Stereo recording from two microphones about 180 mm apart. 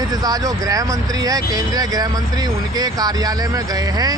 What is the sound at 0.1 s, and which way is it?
Speech, 20° right (ahead or behind).